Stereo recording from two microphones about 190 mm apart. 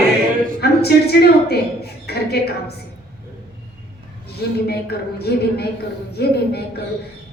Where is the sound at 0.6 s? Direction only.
55° left (ahead or behind).